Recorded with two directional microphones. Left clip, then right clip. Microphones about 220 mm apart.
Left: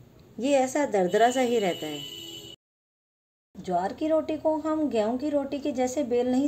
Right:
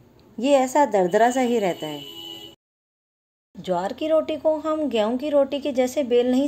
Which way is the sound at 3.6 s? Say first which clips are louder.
Right 3 dB; 30° right (ahead or behind).